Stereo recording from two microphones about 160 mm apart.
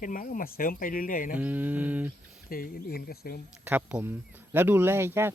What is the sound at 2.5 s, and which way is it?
Speech, 70° left (ahead or behind).